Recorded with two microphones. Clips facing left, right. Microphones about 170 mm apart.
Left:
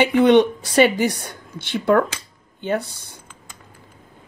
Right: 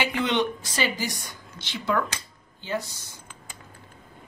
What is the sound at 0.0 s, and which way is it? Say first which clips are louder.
A woman's voice: left 11 dB; 60° left (ahead or behind).